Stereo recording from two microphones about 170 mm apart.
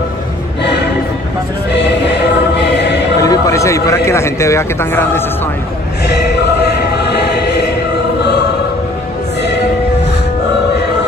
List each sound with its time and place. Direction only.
1.7 s music: 85° left
3.2 s a man's voice: 20° left (ahead or behind)
6.0 s music: 80° left